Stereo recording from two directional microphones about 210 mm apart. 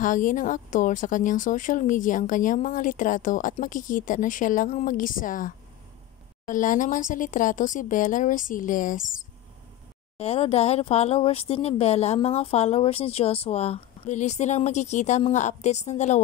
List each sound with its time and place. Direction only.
0.0 s a woman's voice: 40° left (ahead or behind)
10.1 s speech: 30° left (ahead or behind)